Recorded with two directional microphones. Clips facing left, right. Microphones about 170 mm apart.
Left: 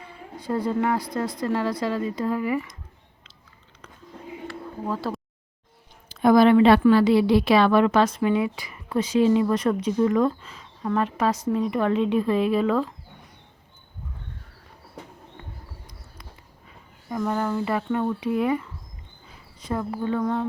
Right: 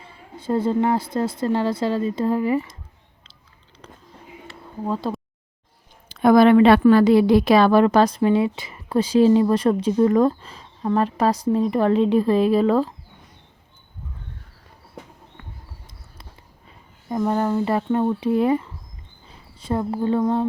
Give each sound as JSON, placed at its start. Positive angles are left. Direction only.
{"t": 0.3, "sound": "speech", "side_deg": -25}
{"t": 4.4, "sound": "a sound", "side_deg": -20}
{"t": 6.1, "sound": "speech", "side_deg": -60}
{"t": 6.8, "sound": "a woman's voice", "side_deg": -45}
{"t": 17.1, "sound": "speech", "side_deg": -30}